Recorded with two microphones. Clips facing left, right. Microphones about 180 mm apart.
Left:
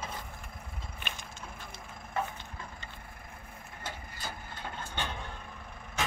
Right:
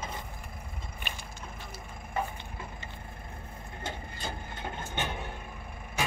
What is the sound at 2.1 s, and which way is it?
Wood, 10° right (ahead or behind).